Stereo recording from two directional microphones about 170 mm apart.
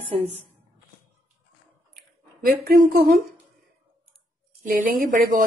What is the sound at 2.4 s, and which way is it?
Speech, 60° right (ahead or behind).